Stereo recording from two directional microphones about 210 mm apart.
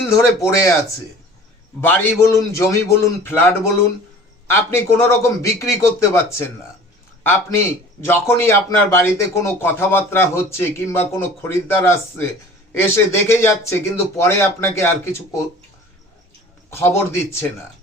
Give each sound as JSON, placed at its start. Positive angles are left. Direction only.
{"t": 0.0, "sound": "a man's voice", "side_deg": 15}
{"t": 1.8, "sound": "a man's voice", "side_deg": 10}
{"t": 16.6, "sound": "a man's voice", "side_deg": 15}